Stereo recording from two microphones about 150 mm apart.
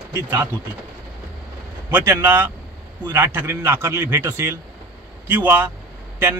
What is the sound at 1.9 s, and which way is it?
A man's voice, 15° right (ahead or behind).